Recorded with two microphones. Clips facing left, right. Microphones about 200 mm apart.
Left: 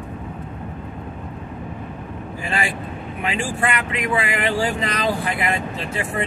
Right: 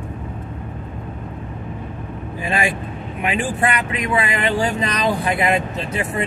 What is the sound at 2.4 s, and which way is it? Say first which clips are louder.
Vehicle: right 4 dB; 15° right (ahead or behind).